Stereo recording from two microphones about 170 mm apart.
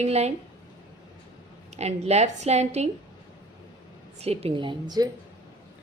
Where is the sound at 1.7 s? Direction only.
40° right (ahead or behind).